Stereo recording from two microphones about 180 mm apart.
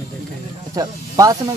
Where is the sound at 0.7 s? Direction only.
20° right (ahead or behind).